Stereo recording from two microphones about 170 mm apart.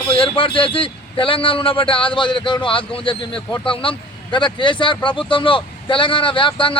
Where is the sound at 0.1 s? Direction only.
30° left (ahead or behind).